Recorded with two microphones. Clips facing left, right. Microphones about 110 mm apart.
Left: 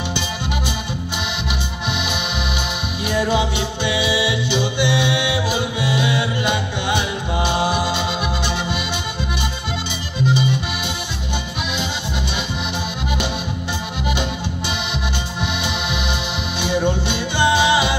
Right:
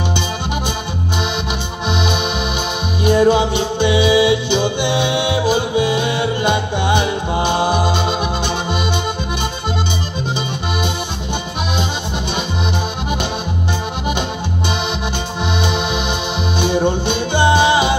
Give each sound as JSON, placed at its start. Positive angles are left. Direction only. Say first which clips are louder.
{"t": 3.0, "sound": "music", "louder": "right 7 dB", "side_deg": -35}
{"t": 16.5, "sound": "music", "louder": "right 3 dB", "side_deg": -35}